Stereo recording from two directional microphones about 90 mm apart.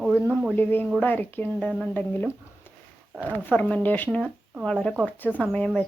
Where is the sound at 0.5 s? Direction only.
25° left (ahead or behind).